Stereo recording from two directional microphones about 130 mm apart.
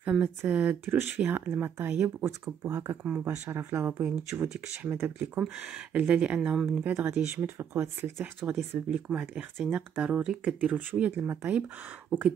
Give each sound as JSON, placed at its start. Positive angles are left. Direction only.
{"t": 0.0, "sound": "speech", "side_deg": -10}
{"t": 3.0, "sound": "speech", "side_deg": -10}
{"t": 6.9, "sound": "speech", "side_deg": -20}